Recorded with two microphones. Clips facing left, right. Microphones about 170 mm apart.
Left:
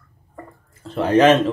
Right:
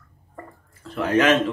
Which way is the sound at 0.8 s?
30° left (ahead or behind).